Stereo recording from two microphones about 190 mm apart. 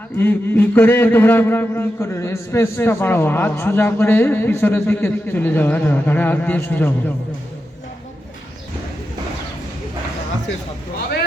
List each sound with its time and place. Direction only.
0.2 s a man's voice: 10° left (ahead or behind)